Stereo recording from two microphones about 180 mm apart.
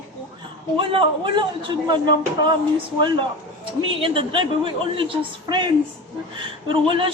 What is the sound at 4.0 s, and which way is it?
Speech, 30° right (ahead or behind).